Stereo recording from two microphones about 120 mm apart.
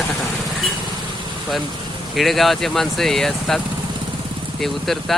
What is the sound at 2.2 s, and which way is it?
Speech, centre (ahead or behind).